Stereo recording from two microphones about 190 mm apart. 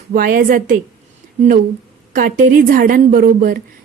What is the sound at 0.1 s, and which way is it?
Speech, 45° right (ahead or behind).